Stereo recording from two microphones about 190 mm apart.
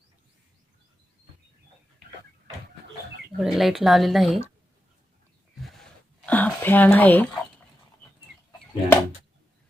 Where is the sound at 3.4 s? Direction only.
Centre (ahead or behind).